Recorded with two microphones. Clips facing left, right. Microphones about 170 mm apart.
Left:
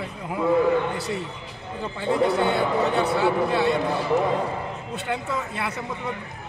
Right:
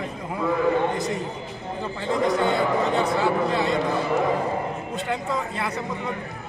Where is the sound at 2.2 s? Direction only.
5° left (ahead or behind).